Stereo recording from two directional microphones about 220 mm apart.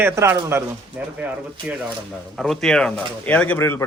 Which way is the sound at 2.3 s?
Centre (ahead or behind).